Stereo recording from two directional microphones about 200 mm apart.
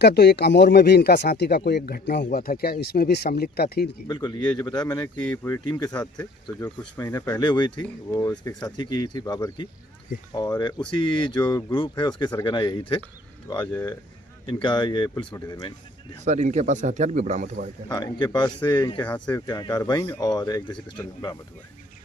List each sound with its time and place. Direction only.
0.0 s speech: 55° left (ahead or behind)
4.1 s speech: 20° left (ahead or behind)
16.2 s speech: 35° right (ahead or behind)
17.8 s speech: 20° left (ahead or behind)
19.0 s speech: 5° left (ahead or behind)
19.5 s speech: 20° left (ahead or behind)